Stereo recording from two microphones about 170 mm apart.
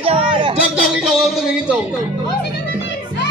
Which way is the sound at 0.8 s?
Centre (ahead or behind).